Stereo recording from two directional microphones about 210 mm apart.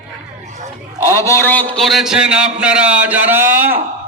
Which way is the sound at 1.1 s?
10° left (ahead or behind).